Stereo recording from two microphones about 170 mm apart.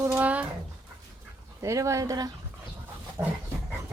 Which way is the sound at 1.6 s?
15° right (ahead or behind).